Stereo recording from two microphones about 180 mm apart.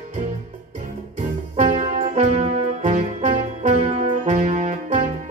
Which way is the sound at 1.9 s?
40° right (ahead or behind).